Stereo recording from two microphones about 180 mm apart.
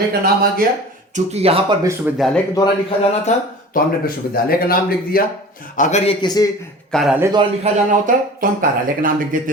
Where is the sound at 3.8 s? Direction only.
55° left (ahead or behind).